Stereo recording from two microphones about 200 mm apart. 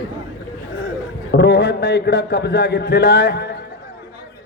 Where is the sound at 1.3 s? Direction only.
55° left (ahead or behind).